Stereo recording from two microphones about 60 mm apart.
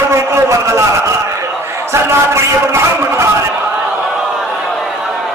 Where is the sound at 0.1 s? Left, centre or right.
Right.